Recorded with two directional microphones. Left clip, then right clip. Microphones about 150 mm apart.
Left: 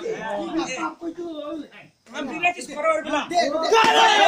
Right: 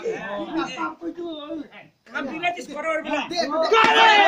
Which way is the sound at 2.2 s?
15° right (ahead or behind).